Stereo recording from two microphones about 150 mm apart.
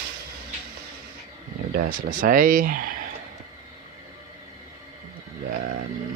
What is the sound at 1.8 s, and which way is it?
Speech, 70° right (ahead or behind).